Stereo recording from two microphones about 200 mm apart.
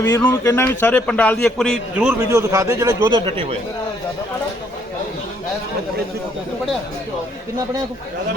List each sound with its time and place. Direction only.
0.0 s speech: 10° left (ahead or behind)
2.3 s a man's voice: 15° right (ahead or behind)